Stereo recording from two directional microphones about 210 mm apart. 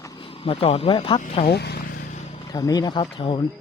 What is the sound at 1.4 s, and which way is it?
Vehicle, 50° left (ahead or behind).